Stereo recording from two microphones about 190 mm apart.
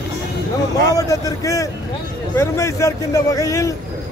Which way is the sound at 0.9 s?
20° left (ahead or behind).